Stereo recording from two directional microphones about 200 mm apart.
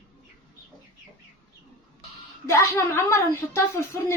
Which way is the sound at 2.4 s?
15° left (ahead or behind).